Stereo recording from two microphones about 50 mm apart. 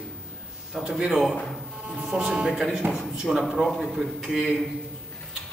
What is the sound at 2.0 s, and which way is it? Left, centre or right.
Speech, centre.